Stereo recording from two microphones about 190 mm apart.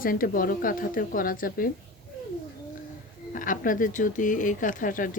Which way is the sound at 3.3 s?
45° left (ahead or behind).